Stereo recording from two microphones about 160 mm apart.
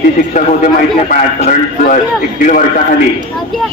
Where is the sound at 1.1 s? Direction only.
55° left (ahead or behind).